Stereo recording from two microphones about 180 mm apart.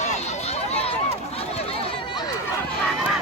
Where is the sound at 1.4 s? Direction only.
35° left (ahead or behind).